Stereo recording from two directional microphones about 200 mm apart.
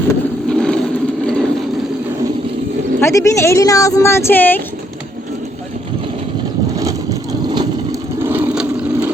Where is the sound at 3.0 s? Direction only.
15° left (ahead or behind).